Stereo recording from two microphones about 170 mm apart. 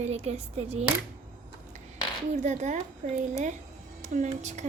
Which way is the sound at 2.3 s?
45° right (ahead or behind).